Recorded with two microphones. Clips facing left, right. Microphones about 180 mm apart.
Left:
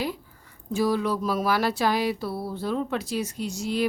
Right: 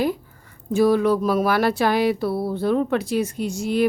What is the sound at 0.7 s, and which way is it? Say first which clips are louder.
Speech: right 7 dB; 55° right (ahead or behind).